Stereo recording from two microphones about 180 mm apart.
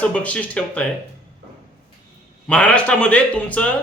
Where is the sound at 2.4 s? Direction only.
5° left (ahead or behind).